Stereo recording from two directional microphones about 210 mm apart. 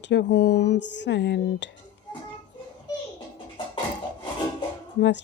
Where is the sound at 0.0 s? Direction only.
55° left (ahead or behind).